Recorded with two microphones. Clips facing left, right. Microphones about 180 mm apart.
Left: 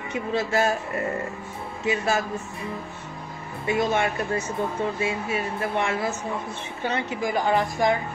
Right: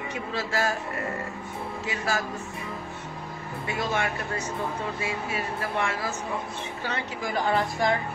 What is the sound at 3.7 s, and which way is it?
A woman's voice, 20° left (ahead or behind).